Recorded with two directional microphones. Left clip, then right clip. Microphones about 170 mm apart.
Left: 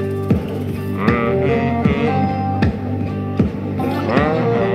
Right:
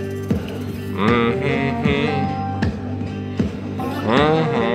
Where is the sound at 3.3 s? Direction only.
40° left (ahead or behind).